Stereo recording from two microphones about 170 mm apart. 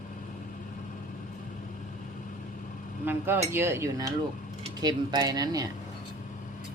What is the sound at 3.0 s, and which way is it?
Chink, 10° right (ahead or behind).